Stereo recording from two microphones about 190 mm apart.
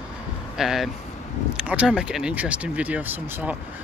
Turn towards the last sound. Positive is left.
turn(degrees=-10)  # may be behind; listen again after turning